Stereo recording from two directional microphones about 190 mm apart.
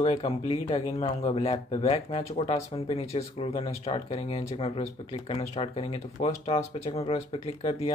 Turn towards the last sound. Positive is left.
turn(degrees=30)  # may be behind; listen again after turning